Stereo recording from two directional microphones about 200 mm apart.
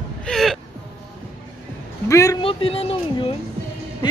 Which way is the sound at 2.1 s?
15° left (ahead or behind).